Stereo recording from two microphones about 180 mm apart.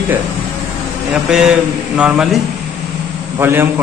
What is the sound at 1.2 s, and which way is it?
Speech, 5° right (ahead or behind).